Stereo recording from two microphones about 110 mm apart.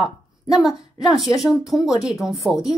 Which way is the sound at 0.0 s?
Centre (ahead or behind).